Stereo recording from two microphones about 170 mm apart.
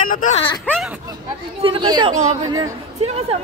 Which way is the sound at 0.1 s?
50° left (ahead or behind).